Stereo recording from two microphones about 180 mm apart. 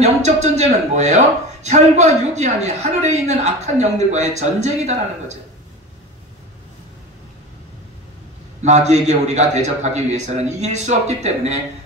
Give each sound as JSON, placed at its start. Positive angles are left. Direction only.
{"t": 0.0, "sound": "speech", "side_deg": -40}
{"t": 8.6, "sound": "speech", "side_deg": -40}